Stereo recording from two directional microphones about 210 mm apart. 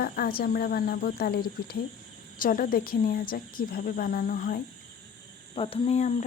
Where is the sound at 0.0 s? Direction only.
45° left (ahead or behind).